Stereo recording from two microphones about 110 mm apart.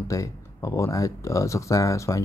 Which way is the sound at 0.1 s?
30° left (ahead or behind).